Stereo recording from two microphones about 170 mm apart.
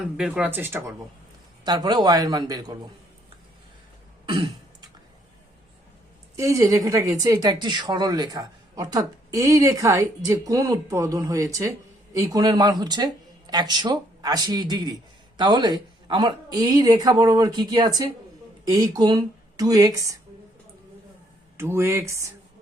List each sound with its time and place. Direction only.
0.2 s a woman's voice: 5° right (ahead or behind); by 2.7 s 20° right (ahead or behind)
6.3 s a woman's voice: 20° right (ahead or behind)
21.6 s speech: 15° right (ahead or behind)